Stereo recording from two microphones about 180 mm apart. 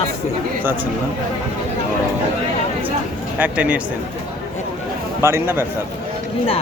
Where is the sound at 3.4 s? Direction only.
10° right (ahead or behind).